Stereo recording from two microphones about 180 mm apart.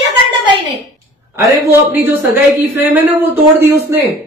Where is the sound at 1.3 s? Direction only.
15° right (ahead or behind).